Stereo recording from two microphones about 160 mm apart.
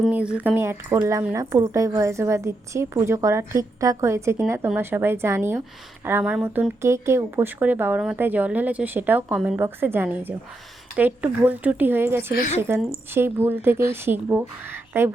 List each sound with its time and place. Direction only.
0.1 s a woman's voice: 10° right (ahead or behind)